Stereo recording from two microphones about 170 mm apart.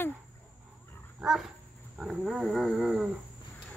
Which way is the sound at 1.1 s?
Centre (ahead or behind).